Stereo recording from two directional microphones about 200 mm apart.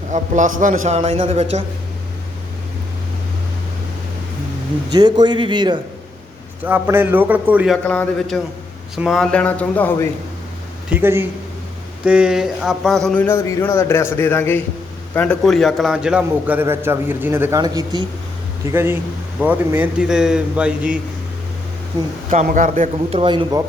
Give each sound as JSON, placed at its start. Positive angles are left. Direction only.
{"t": 0.1, "sound": "a man's voice", "side_deg": -40}
{"t": 4.9, "sound": "a man's voice", "side_deg": -20}
{"t": 6.7, "sound": "a man's voice", "side_deg": -10}
{"t": 7.9, "sound": "a man's voice", "side_deg": 5}
{"t": 10.8, "sound": "a man's voice", "side_deg": -10}
{"t": 22.3, "sound": "a man's voice", "side_deg": -40}
{"t": 23.1, "sound": "a man's voice", "side_deg": -25}